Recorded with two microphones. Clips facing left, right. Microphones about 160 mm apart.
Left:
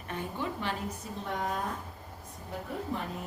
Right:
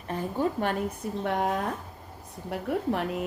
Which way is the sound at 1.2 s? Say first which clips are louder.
Right 6 dB; 70° right (ahead or behind).